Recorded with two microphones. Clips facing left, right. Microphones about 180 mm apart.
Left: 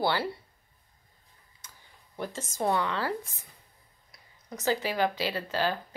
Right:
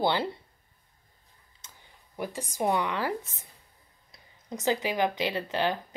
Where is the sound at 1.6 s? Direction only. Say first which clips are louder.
Even; 20° right (ahead or behind).